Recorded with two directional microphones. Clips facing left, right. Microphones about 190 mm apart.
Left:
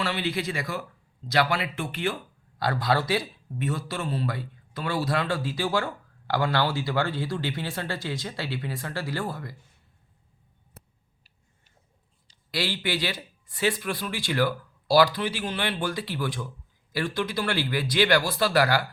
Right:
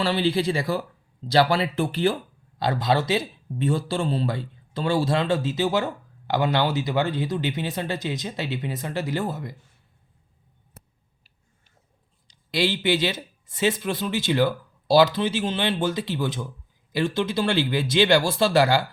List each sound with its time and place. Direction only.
0.0 s speech: 30° right (ahead or behind)
2.6 s speech: 20° right (ahead or behind)
12.5 s speech: 20° right (ahead or behind)